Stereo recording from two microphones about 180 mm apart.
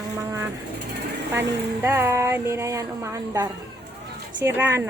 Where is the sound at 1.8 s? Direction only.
15° right (ahead or behind).